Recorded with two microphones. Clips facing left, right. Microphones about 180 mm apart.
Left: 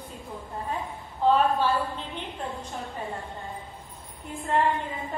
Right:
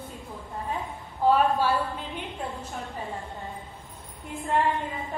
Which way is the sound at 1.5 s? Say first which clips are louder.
Even; 10° right (ahead or behind).